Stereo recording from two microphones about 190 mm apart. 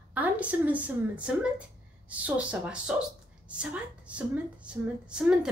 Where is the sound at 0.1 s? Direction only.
10° right (ahead or behind).